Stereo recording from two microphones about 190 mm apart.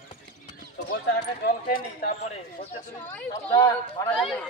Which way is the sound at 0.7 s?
60° left (ahead or behind).